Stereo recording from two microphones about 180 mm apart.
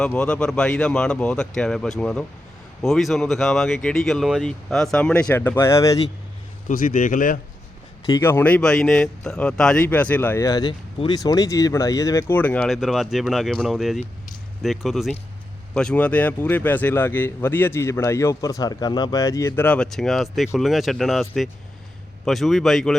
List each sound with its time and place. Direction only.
0.0 s speech: 5° left (ahead or behind)
6.7 s speech: 50° left (ahead or behind)
8.0 s a man's voice: 15° left (ahead or behind)